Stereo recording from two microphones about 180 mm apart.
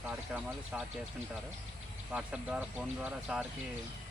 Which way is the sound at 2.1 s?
5° right (ahead or behind).